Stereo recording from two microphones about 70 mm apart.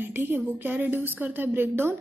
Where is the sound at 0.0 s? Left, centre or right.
Right.